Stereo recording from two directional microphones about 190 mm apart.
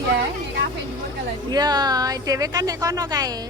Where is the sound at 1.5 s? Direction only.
20° right (ahead or behind).